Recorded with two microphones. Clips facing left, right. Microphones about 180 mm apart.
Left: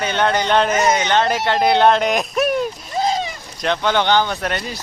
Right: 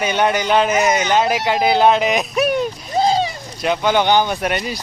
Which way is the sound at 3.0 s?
30° right (ahead or behind).